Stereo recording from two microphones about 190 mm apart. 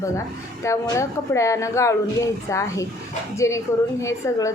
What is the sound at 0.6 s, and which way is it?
A woman's voice, 15° left (ahead or behind).